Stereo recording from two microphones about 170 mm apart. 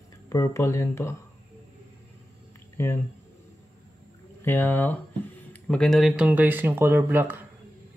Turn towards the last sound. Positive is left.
turn(degrees=-10)  # may be behind; listen again after turning